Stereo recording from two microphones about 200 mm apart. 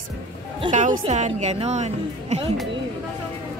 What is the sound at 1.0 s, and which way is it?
Speech, 35° right (ahead or behind).